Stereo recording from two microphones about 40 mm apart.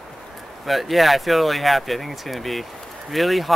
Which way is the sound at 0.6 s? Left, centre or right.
Centre.